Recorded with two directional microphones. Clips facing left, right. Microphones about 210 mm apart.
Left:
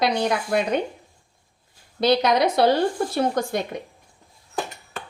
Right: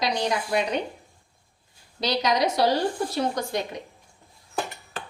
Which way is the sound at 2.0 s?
55° left (ahead or behind).